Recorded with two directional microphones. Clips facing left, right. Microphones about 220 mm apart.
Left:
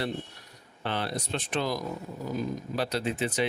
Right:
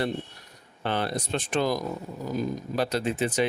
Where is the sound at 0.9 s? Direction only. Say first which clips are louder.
Right 3 dB; 50° right (ahead or behind).